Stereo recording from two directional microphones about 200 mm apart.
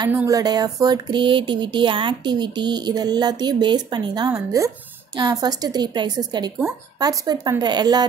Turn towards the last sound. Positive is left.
turn(degrees=-20)  # may be behind; listen again after turning